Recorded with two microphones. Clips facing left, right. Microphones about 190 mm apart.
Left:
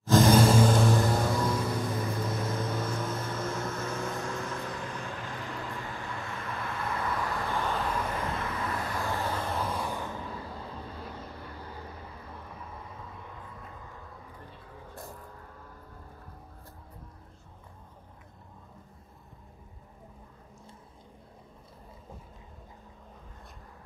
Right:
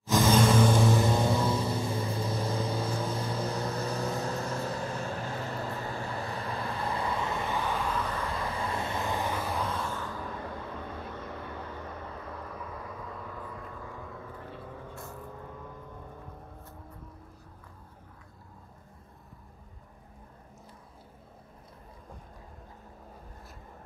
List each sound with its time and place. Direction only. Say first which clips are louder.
0.2 s vehicle: left 1 dB; 10° left (ahead or behind)
0.7 s vehicle: even; 5° right (ahead or behind)
1.0 s vehicle: right 1 dB; 20° right (ahead or behind)
7.9 s vehicle: even; 10° left (ahead or behind)
8.3 s vehicle: even; 30° right (ahead or behind); by 9.6 s 10° right (ahead or behind)
9.6 s vehicle: left 1 dB; 10° left (ahead or behind)
10.3 s vehicle: right 2 dB; 35° left (ahead or behind)
12.8 s vehicle: right 4 dB; 90° right